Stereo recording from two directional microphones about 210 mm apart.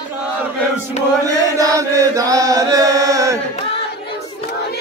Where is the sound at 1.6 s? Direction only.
15° right (ahead or behind).